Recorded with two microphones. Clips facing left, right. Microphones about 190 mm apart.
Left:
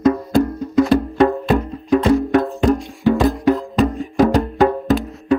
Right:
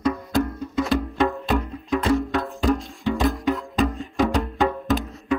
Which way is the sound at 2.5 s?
Centre (ahead or behind).